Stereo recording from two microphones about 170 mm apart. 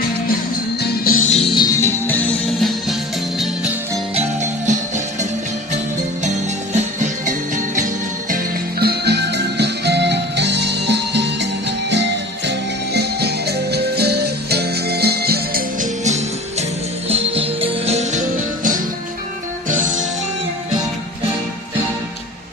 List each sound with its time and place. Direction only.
0.8 s music: 65° left (ahead or behind); by 2.7 s 5° left (ahead or behind)
4.1 s music: 40° right (ahead or behind)
6.7 s music: 45° right (ahead or behind)
8.8 s music: 75° right (ahead or behind); by 11.4 s 90° right
12.5 s music: 75° right (ahead or behind)
16.0 s music: 40° right (ahead or behind)